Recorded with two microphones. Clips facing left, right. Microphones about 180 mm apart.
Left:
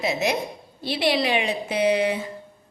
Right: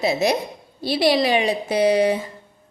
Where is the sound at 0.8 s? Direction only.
40° right (ahead or behind).